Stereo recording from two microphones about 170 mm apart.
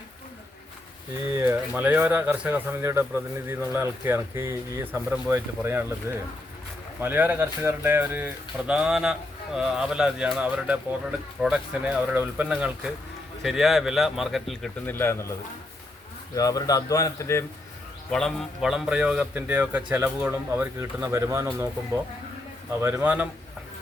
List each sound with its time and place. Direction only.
1.4 s speech: 10° right (ahead or behind)
4.9 s a man's voice: 5° right (ahead or behind)
5.3 s a man's voice: 15° right (ahead or behind); by 14.9 s centre (ahead or behind)
14.9 s speech: 15° left (ahead or behind)
18.1 s speech: centre (ahead or behind); by 21.7 s 15° right (ahead or behind)
22.8 s speech: 15° right (ahead or behind)